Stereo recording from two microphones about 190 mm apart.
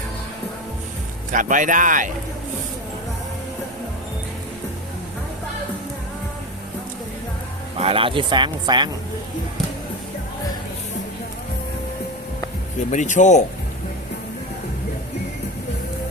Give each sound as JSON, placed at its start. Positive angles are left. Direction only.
{"t": 1.3, "sound": "speech", "side_deg": -45}
{"t": 7.8, "sound": "speech", "side_deg": -30}
{"t": 12.9, "sound": "speech", "side_deg": 40}